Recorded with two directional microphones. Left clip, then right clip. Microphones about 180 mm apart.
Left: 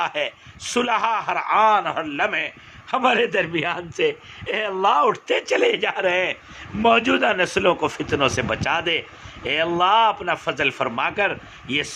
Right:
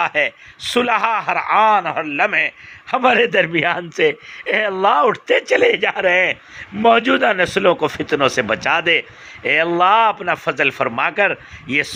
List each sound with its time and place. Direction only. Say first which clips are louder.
0.0 s a man's voice: right 6 dB; 20° right (ahead or behind)